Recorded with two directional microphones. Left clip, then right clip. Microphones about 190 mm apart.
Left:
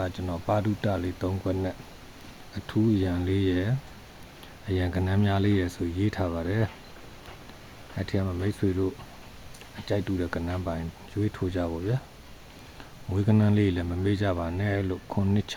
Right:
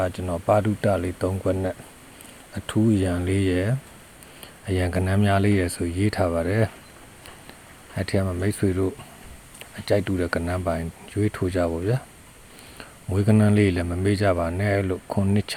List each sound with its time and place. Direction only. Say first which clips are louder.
0.0 s speech: right 7 dB; 25° right (ahead or behind)
7.9 s speech: right 6 dB; 35° right (ahead or behind)
13.1 s speech: right 5 dB; 30° right (ahead or behind)